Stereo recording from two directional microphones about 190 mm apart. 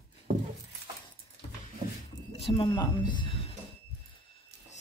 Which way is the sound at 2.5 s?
25° left (ahead or behind).